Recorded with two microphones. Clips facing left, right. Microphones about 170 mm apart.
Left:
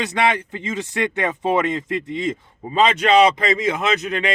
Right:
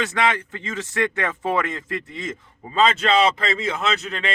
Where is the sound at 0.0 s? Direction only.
15° left (ahead or behind).